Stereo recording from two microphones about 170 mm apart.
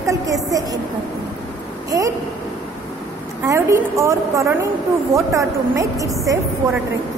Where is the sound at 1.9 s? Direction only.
20° right (ahead or behind).